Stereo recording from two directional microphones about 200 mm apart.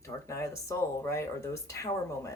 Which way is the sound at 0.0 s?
15° left (ahead or behind).